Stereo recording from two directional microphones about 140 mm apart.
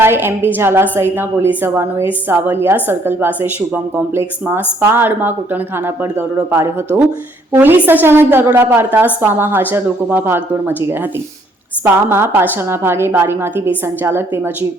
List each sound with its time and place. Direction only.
0.0 s a woman's voice: 15° right (ahead or behind)
12.0 s a woman's voice: 15° right (ahead or behind)